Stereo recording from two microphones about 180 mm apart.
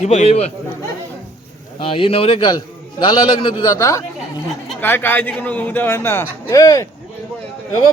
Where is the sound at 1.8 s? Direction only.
30° left (ahead or behind).